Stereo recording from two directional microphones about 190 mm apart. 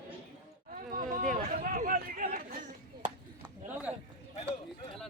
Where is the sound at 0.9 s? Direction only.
45° right (ahead or behind).